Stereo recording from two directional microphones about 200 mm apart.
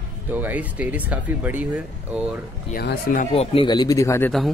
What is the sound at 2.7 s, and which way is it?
Speech, 50° left (ahead or behind).